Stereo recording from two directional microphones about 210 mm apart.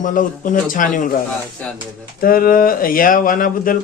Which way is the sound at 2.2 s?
45° left (ahead or behind).